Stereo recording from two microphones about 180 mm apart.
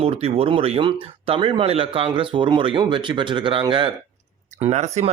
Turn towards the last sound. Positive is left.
turn(degrees=-40)  # may be behind; listen again after turning